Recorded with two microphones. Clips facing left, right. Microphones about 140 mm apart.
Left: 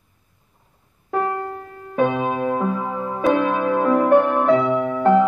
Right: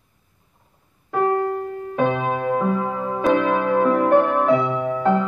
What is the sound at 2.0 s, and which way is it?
Music, centre (ahead or behind).